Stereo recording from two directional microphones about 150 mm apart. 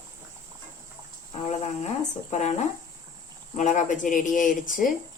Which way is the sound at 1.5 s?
45° left (ahead or behind).